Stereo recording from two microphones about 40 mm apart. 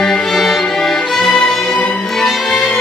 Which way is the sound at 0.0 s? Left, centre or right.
Centre.